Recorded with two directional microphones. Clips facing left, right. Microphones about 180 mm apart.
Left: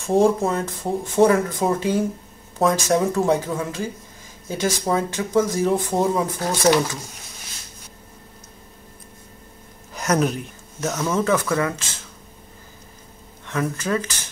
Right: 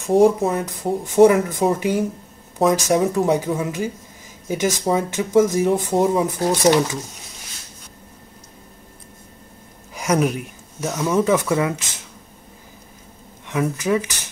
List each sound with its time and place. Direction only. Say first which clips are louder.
0.1 s speech: right 3 dB; 5° right (ahead or behind)
1.0 s speech: right 4 dB; 15° right (ahead or behind)
9.9 s speech: right 1 dB; 5° right (ahead or behind)
13.5 s speech: right 3 dB; 15° right (ahead or behind)